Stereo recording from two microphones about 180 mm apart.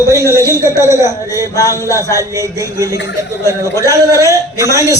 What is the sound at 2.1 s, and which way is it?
Speech, 15° right (ahead or behind).